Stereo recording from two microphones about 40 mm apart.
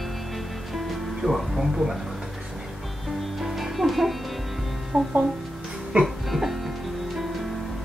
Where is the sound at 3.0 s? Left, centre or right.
Centre.